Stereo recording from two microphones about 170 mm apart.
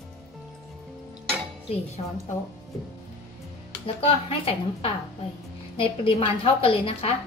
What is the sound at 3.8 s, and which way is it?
A woman's voice, 35° left (ahead or behind).